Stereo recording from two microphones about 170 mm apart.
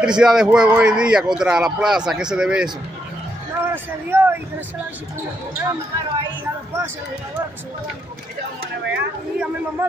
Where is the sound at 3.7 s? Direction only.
10° right (ahead or behind).